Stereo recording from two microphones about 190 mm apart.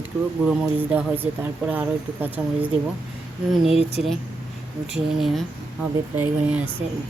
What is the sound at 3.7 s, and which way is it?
Speech, 30° left (ahead or behind).